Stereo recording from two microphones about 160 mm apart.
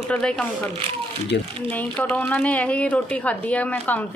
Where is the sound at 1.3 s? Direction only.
90° left.